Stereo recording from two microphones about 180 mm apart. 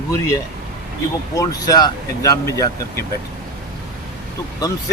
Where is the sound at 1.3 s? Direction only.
20° left (ahead or behind).